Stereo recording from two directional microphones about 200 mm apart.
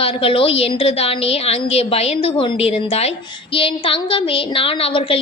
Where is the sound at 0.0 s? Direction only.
30° left (ahead or behind).